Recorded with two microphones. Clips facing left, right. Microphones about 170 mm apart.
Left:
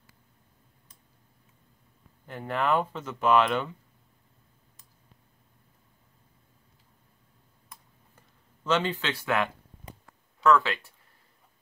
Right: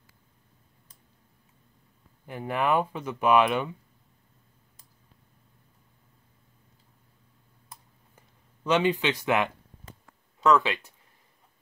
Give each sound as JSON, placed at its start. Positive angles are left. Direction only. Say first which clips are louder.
{"t": 2.2, "sound": "speech", "louder": "right 1 dB", "side_deg": -10}
{"t": 8.6, "sound": "speech", "louder": "right 4 dB", "side_deg": -15}